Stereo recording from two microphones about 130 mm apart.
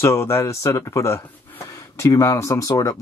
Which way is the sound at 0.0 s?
20° left (ahead or behind).